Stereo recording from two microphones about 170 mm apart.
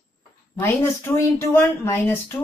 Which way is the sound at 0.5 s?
15° left (ahead or behind).